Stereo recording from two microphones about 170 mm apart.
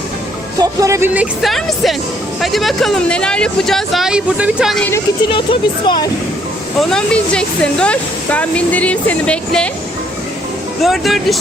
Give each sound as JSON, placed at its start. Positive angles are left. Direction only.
{"t": 0.6, "sound": "music", "side_deg": -20}
{"t": 2.4, "sound": "speech", "side_deg": 0}
{"t": 5.3, "sound": "speech", "side_deg": 30}
{"t": 6.7, "sound": "speech", "side_deg": 5}
{"t": 10.8, "sound": "speech", "side_deg": 0}